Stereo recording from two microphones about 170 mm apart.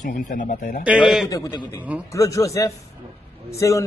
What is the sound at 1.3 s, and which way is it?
A man's voice, 25° left (ahead or behind).